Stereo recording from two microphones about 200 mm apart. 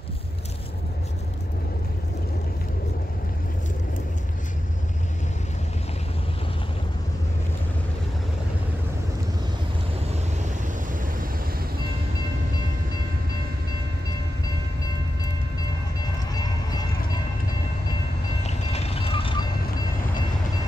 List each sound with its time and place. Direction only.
18.4 s vehicle: 35° left (ahead or behind)